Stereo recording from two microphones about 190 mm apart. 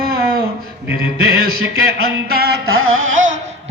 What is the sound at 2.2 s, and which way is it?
Music, 55° right (ahead or behind).